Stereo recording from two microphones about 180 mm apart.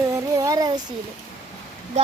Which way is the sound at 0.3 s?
20° right (ahead or behind).